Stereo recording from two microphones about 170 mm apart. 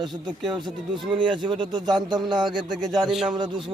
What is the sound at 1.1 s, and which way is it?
Speech, 30° right (ahead or behind).